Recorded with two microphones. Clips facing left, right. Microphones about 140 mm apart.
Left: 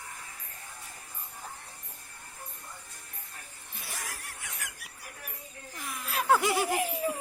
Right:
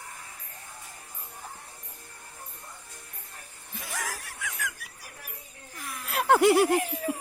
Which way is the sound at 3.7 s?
90° right.